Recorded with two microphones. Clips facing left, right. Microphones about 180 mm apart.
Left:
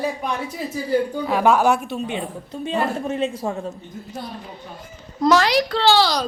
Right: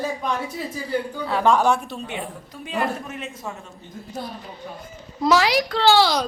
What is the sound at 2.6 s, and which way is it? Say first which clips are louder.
A man's voice: left 3 dB; 30° left (ahead or behind).